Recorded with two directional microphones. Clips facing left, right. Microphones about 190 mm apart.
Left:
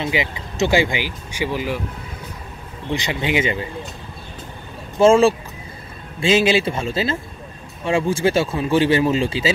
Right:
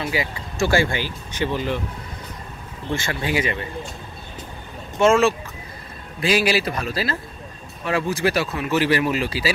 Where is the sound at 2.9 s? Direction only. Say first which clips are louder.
Left 2 dB; 20° left (ahead or behind).